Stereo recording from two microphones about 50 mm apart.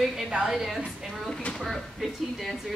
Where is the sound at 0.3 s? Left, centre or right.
Centre.